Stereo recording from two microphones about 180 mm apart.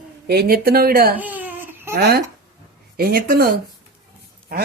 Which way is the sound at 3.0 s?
55° right (ahead or behind).